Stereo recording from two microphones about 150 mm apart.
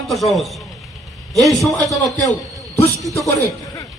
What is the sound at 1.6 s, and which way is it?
Speech, centre (ahead or behind).